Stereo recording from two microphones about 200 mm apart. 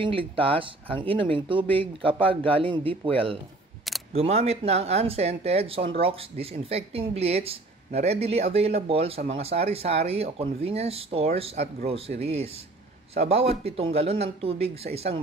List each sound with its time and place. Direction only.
0.0 s speech: 25° right (ahead or behind)